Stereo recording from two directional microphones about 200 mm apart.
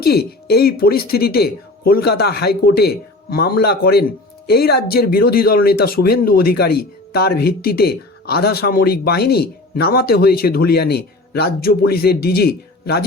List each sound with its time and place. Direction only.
0.0 s speech: 50° left (ahead or behind)